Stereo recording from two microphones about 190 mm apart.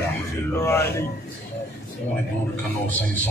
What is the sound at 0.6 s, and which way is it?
Speech, 15° left (ahead or behind).